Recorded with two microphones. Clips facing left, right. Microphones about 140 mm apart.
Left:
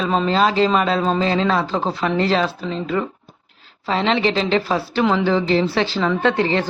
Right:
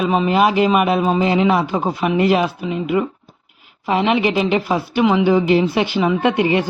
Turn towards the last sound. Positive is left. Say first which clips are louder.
# right 2 dB
turn(degrees=-15)  # may be behind; listen again after turning